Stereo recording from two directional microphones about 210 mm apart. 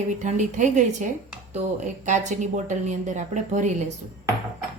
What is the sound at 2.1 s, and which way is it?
A woman's voice, 35° right (ahead or behind).